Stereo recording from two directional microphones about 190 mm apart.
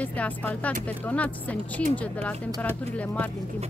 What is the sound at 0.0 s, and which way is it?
A woman's voice, 10° left (ahead or behind).